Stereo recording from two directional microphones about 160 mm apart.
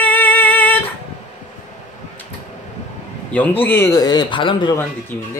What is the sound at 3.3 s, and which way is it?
A man's voice, 10° left (ahead or behind).